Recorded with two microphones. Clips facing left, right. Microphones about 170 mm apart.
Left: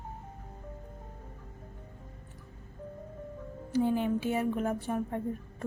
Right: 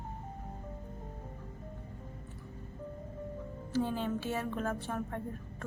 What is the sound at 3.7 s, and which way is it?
A woman's voice, 15° left (ahead or behind).